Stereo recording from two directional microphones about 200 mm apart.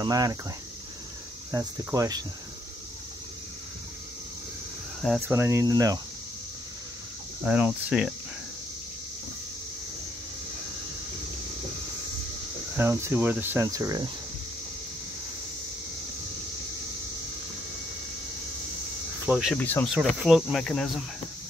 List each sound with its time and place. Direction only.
0.0 s speech: 20° right (ahead or behind)
1.5 s speech: 15° right (ahead or behind)
5.3 s speech: 15° right (ahead or behind)
7.4 s speech: 5° right (ahead or behind)
12.7 s speech: 10° right (ahead or behind)
19.2 s speech: 5° right (ahead or behind)
19.6 s speech: 10° left (ahead or behind)
19.9 s speech: centre (ahead or behind)